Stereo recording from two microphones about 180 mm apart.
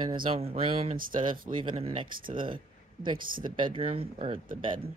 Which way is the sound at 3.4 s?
25° right (ahead or behind).